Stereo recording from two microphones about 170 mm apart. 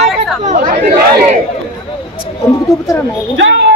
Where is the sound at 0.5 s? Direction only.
70° right (ahead or behind).